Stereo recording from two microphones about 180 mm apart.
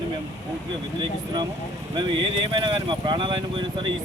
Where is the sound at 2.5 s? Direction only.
30° right (ahead or behind).